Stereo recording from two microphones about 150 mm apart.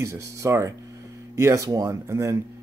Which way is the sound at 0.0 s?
20° right (ahead or behind).